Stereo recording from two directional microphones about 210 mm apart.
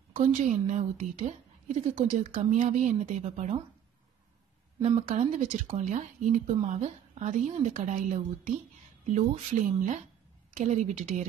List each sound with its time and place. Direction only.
0.1 s speech: 35° right (ahead or behind)
5.0 s speech: 35° right (ahead or behind)